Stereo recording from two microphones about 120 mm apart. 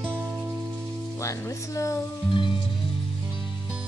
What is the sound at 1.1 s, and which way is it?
Music, 25° left (ahead or behind).